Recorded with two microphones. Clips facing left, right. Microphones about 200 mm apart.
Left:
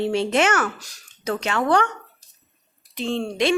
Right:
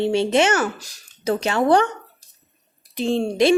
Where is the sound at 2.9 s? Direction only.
10° right (ahead or behind).